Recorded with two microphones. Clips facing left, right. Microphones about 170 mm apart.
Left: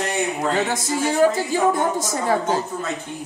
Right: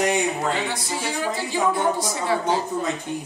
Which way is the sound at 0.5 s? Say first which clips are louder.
Left 5 dB; 45° left (ahead or behind).